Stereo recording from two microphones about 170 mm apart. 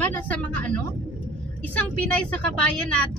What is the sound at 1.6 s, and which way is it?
Speech, 10° left (ahead or behind).